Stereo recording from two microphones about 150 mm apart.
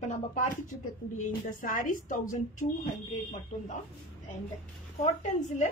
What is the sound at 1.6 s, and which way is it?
A woman's voice, 65° left (ahead or behind).